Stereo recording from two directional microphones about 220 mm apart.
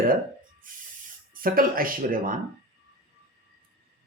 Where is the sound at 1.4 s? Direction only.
40° right (ahead or behind).